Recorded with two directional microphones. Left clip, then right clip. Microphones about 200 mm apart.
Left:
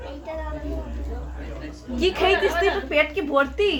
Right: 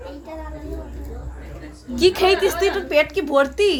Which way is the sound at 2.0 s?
50° right (ahead or behind).